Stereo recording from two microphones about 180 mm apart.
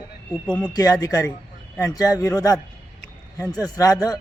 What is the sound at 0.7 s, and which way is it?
A man's voice, 20° left (ahead or behind).